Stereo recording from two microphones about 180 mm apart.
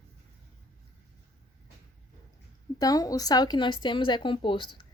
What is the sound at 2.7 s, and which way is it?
Speech, 20° left (ahead or behind).